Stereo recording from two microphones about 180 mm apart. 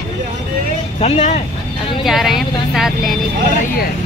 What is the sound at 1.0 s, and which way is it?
Speech, 40° left (ahead or behind).